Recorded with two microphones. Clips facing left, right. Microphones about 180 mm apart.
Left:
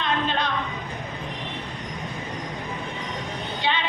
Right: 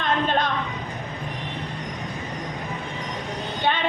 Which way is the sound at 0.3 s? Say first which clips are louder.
Right 3 dB; 50° right (ahead or behind).